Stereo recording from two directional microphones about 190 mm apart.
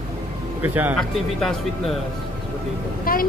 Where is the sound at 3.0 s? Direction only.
50° left (ahead or behind).